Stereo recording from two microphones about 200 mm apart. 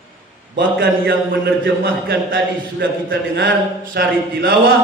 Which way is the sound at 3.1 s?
65° right (ahead or behind).